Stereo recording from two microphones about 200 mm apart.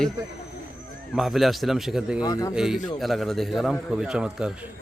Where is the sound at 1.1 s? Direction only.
Centre (ahead or behind).